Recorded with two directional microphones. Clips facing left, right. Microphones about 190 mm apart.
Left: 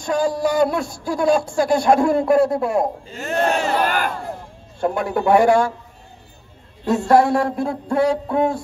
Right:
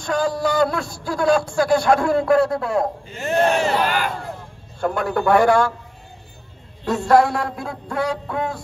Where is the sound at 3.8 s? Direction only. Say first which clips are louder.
Left 1 dB; 50° left (ahead or behind).